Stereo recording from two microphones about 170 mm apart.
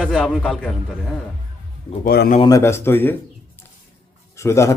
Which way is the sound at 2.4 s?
20° left (ahead or behind).